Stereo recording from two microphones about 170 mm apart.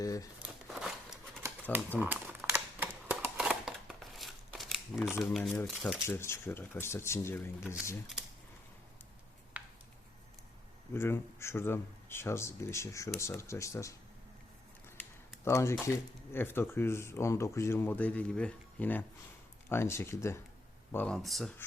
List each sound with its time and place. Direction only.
0.0 s speech: 20° left (ahead or behind)
0.3 s scissors: 5° right (ahead or behind)
2.0 s a sound: 10° right (ahead or behind)
5.2 s speech: 5° left (ahead or behind)
6.1 s speech: 15° left (ahead or behind)
9.5 s a sound: 10° right (ahead or behind)
10.9 s speech: 15° left (ahead or behind)
15.4 s speech: 15° left (ahead or behind); by 21.5 s centre (ahead or behind)